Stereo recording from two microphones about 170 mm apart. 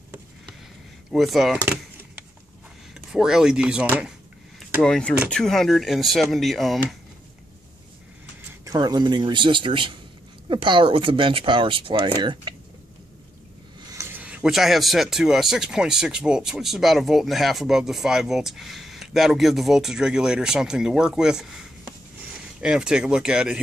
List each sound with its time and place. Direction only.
1.1 s a sound: centre (ahead or behind)
2.9 s speech: 5° right (ahead or behind)
4.8 s speech: 5° left (ahead or behind)
8.4 s speech: 20° right (ahead or behind)
13.7 s speech: 15° right (ahead or behind)